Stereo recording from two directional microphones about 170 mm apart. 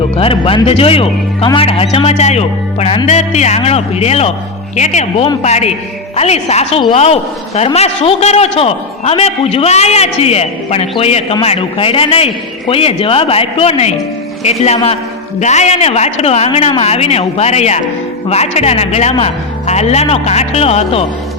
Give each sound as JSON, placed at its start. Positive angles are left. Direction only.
{"t": 0.2, "sound": "a man's voice", "side_deg": 35}